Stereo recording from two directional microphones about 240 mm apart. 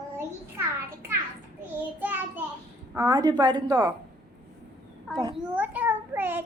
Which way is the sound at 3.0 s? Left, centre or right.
Centre.